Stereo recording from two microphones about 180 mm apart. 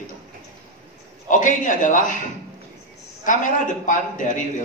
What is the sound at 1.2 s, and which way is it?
Speech, 45° left (ahead or behind).